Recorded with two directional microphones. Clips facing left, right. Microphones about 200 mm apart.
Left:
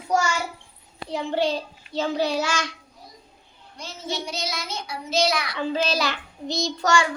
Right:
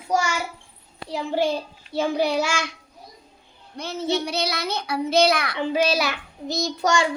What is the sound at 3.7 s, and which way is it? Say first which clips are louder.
A child's voice: right 7 dB; 60° right (ahead or behind).